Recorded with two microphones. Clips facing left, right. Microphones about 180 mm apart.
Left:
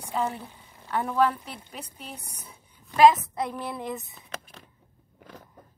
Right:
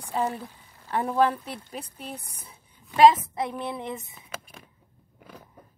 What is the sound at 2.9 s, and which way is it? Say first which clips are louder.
Speech: right 1 dB; 25° right (ahead or behind).